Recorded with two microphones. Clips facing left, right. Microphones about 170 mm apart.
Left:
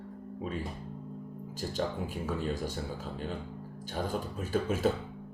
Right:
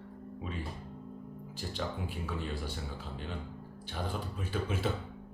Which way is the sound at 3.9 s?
45° left (ahead or behind).